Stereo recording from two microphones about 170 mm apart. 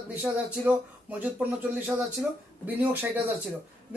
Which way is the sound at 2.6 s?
10° right (ahead or behind).